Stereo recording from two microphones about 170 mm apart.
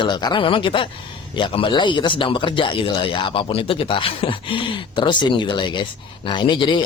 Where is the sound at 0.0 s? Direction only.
25° left (ahead or behind).